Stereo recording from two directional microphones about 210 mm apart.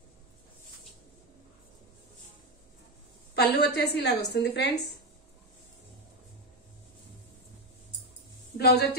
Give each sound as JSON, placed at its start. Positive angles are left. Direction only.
{"t": 3.3, "sound": "a woman's voice", "side_deg": 50}
{"t": 8.5, "sound": "a woman's voice", "side_deg": 50}